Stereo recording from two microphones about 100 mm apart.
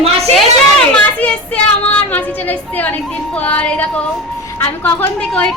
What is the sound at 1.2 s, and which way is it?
Child singing, 15° left (ahead or behind).